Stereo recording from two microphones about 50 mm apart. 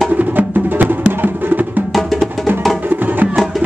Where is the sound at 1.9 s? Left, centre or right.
Centre.